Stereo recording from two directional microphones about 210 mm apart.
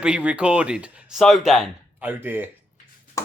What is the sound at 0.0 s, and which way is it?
Speech, 5° right (ahead or behind).